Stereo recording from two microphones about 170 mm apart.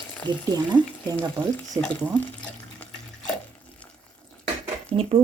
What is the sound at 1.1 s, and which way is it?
Speech, 20° right (ahead or behind).